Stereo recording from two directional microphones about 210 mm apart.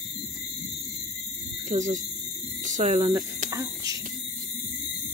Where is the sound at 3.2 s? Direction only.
15° right (ahead or behind).